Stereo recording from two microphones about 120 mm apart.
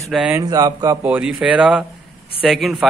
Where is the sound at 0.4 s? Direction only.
35° right (ahead or behind).